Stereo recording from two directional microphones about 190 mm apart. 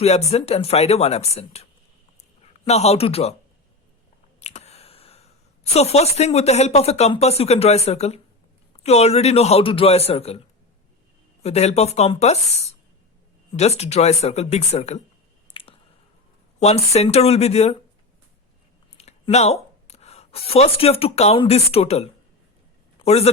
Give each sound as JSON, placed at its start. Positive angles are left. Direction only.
{"t": 0.0, "sound": "a man's voice", "side_deg": 35}
{"t": 4.4, "sound": "a sound", "side_deg": 35}
{"t": 5.7, "sound": "speech", "side_deg": 35}
{"t": 11.4, "sound": "speech", "side_deg": 35}
{"t": 15.6, "sound": "squish", "side_deg": 30}
{"t": 16.6, "sound": "speech", "side_deg": 35}
{"t": 18.9, "sound": "a woman's voice", "side_deg": 35}